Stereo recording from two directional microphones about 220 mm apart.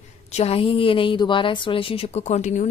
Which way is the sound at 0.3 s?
30° left (ahead or behind).